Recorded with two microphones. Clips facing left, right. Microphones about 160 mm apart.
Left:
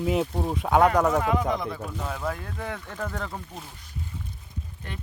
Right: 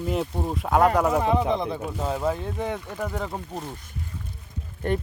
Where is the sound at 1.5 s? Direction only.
30° right (ahead or behind); by 3.3 s 15° right (ahead or behind).